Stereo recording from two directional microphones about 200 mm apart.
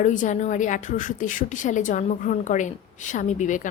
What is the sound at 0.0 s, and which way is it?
A woman's voice, 40° left (ahead or behind).